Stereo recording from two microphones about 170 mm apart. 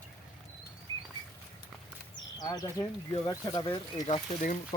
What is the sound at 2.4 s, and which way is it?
Speech, 20° left (ahead or behind).